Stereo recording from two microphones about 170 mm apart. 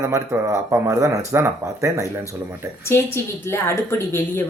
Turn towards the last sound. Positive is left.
turn(degrees=15)  # may be behind; listen again after turning